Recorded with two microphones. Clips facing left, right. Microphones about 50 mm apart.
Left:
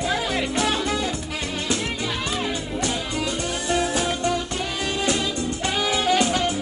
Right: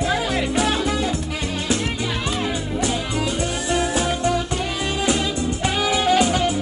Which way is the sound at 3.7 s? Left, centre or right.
Centre.